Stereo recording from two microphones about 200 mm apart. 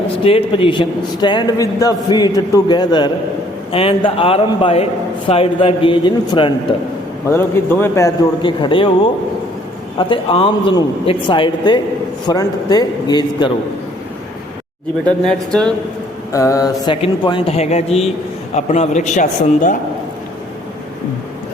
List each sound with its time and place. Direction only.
0.2 s a man's voice: 25° left (ahead or behind)
7.3 s a man's voice: 10° left (ahead or behind)
10.0 s a man's voice: 25° left (ahead or behind)
15.2 s speech: 5° left (ahead or behind)
16.3 s a man's voice: 15° left (ahead or behind); by 19.7 s 35° left (ahead or behind)